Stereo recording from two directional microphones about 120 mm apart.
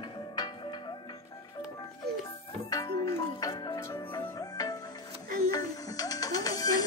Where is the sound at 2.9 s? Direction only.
45° left (ahead or behind).